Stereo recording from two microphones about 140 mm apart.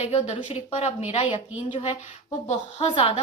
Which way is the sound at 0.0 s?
50° left (ahead or behind).